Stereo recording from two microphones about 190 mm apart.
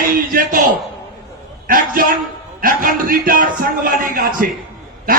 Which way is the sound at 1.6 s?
45° right (ahead or behind).